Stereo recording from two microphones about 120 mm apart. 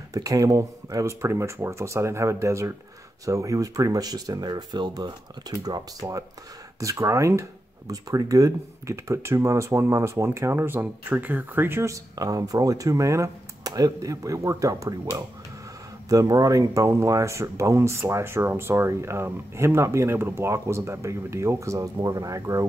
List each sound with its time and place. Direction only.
0.1 s speech: 30° right (ahead or behind)